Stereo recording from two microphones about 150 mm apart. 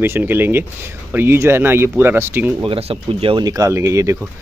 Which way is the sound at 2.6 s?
35° right (ahead or behind).